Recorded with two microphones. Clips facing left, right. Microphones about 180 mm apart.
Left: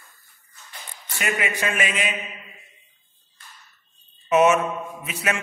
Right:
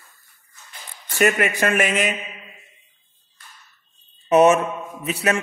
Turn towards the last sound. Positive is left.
turn(degrees=-35)  # may be behind; listen again after turning